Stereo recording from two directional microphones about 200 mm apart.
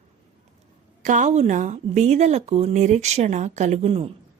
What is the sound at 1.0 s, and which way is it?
Speech, 35° right (ahead or behind).